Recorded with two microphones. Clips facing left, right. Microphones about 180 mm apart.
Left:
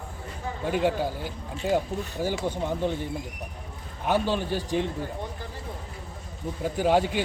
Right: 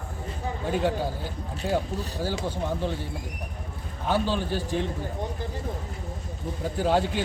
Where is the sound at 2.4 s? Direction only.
15° left (ahead or behind).